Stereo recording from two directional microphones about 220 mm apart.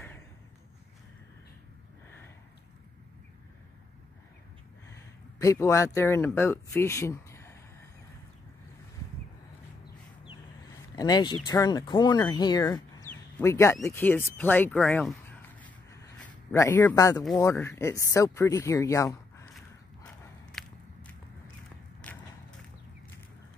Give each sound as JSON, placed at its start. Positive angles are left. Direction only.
{"t": 5.4, "sound": "speech", "side_deg": 15}
{"t": 11.0, "sound": "speech", "side_deg": 20}
{"t": 20.5, "sound": "walk", "side_deg": 5}
{"t": 22.0, "sound": "a sound", "side_deg": 5}